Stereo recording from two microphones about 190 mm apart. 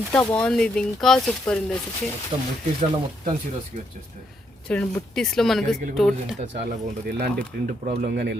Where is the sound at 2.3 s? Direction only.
25° right (ahead or behind).